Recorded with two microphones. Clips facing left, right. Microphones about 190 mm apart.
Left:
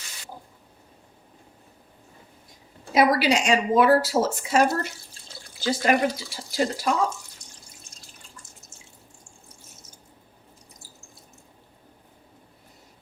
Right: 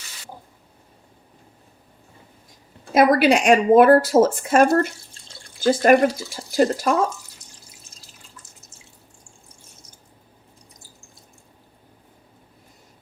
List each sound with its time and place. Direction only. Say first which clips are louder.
2.9 s speech: right 5 dB; 50° right (ahead or behind)